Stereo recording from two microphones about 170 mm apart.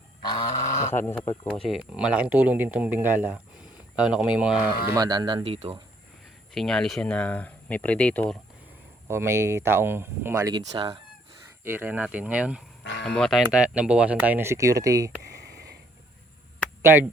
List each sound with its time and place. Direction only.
0.5 s a sound: 45° left (ahead or behind)
0.9 s speech: 10° left (ahead or behind); by 4.7 s 5° right (ahead or behind)
4.9 s speech: 25° right (ahead or behind)
6.5 s speech: centre (ahead or behind)
9.0 s speech: 15° right (ahead or behind)
10.8 s fowl: 30° right (ahead or behind)
11.6 s speech: 10° right (ahead or behind)
13.1 s speech: 5° left (ahead or behind)
13.4 s speech: 5° right (ahead or behind)
16.8 s speech: 15° right (ahead or behind)